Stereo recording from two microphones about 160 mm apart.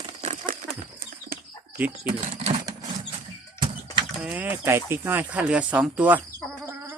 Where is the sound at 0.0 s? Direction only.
45° right (ahead or behind).